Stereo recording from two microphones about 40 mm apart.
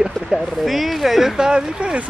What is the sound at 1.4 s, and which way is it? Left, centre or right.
Speech, right.